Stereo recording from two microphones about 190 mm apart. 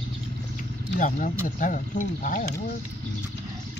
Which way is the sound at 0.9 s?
45° left (ahead or behind).